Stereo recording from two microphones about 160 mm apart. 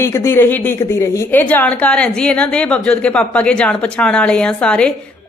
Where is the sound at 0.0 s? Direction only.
15° left (ahead or behind).